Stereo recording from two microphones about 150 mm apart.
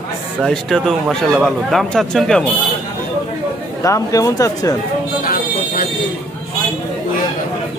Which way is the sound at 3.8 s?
20° left (ahead or behind).